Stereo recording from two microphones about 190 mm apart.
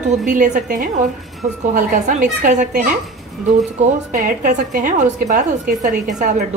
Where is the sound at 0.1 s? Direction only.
40° right (ahead or behind).